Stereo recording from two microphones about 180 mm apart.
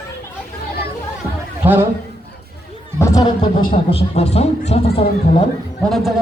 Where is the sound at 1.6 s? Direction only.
10° right (ahead or behind).